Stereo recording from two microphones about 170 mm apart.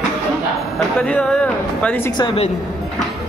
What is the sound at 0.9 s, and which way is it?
Speech, 10° left (ahead or behind).